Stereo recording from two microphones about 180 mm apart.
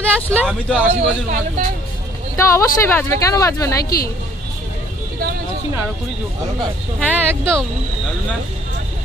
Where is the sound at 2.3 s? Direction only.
15° left (ahead or behind).